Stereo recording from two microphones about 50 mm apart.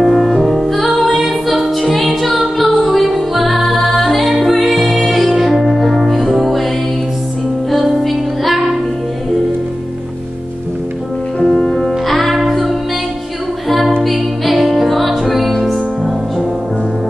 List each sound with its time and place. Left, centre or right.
0.0 s music: centre
7.7 s music: centre
11.4 s music: centre